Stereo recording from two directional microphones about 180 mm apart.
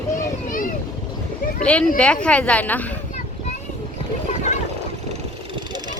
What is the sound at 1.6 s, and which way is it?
A woman's voice, 5° left (ahead or behind).